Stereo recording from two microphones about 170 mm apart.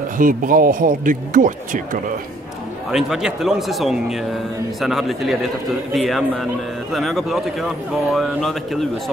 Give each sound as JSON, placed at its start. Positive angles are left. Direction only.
{"t": 0.2, "sound": "speech", "side_deg": -55}
{"t": 2.9, "sound": "speech", "side_deg": -5}